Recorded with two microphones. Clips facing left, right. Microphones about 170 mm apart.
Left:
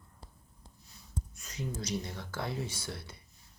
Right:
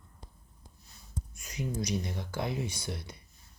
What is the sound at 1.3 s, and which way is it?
Speech, 15° right (ahead or behind).